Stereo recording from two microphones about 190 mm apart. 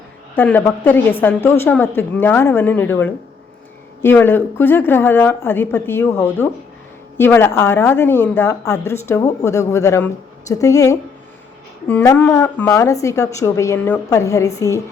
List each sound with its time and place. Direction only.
0.3 s a woman's voice: 10° left (ahead or behind)